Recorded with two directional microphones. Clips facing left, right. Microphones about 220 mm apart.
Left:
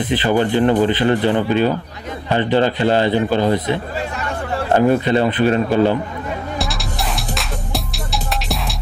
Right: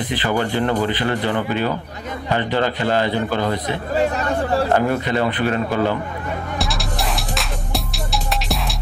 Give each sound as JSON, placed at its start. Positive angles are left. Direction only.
{"t": 0.2, "sound": "speech", "side_deg": 20}
{"t": 4.7, "sound": "speech", "side_deg": 25}
{"t": 6.6, "sound": "music", "side_deg": 0}